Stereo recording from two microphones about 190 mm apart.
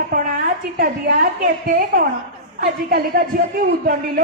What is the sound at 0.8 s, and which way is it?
A woman's voice, 50° right (ahead or behind).